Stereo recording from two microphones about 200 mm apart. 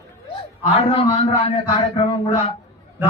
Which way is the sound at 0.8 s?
30° left (ahead or behind).